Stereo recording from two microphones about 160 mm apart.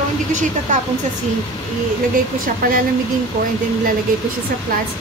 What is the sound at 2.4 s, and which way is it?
Speech, 60° right (ahead or behind).